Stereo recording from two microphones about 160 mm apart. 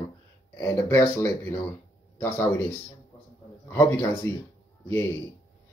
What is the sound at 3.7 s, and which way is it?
Speech, 15° left (ahead or behind).